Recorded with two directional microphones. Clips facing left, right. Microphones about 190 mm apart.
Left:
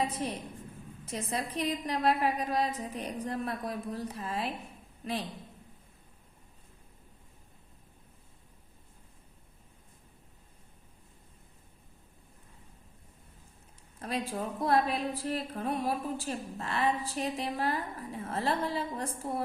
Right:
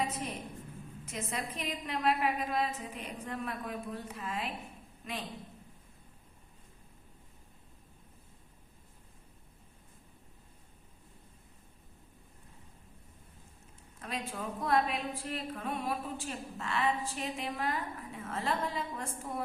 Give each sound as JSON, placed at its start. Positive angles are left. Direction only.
{"t": 0.0, "sound": "a sound", "side_deg": 30}
{"t": 1.0, "sound": "a woman's voice", "side_deg": 35}
{"t": 14.0, "sound": "a woman's voice", "side_deg": 35}